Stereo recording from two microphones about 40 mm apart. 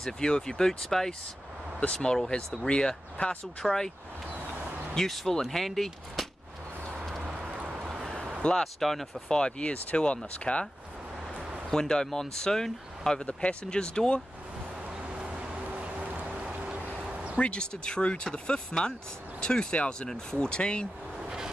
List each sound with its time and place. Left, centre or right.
0.0 s speech: centre
1.8 s speech: centre
3.6 s speech: centre
4.9 s speech: centre
7.3 s a sound: right
7.8 s a sound: centre
8.5 s speech: centre
9.3 s speech: left
11.7 s speech: centre
13.2 s speech: left
15.0 s vehicle: right
15.8 s a sound: right
17.4 s speech: left